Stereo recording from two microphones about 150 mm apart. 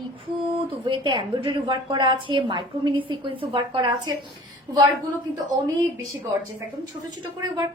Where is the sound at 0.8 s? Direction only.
35° right (ahead or behind).